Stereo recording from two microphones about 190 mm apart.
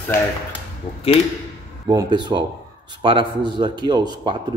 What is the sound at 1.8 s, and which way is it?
A man's voice, 20° right (ahead or behind).